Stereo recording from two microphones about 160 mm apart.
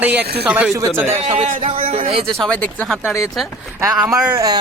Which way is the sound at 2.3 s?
5° left (ahead or behind).